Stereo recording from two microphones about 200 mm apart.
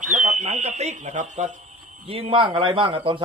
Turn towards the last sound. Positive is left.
turn(degrees=-25)  # may be behind; listen again after turning